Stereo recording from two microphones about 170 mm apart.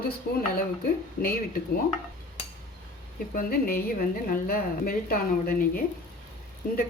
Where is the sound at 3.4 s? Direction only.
60° left (ahead or behind).